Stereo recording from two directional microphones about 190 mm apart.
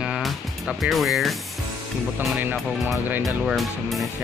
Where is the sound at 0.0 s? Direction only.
5° right (ahead or behind).